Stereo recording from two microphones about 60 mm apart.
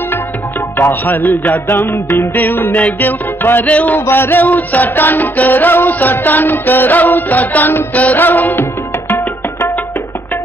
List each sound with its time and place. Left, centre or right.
0.7 s music: left
4.0 s music: left